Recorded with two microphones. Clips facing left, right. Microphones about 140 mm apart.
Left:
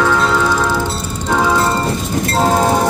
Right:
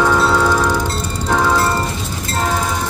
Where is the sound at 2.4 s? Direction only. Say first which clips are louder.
Left 6 dB; 40° left (ahead or behind).